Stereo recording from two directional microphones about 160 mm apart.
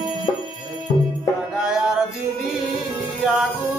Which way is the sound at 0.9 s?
35° left (ahead or behind).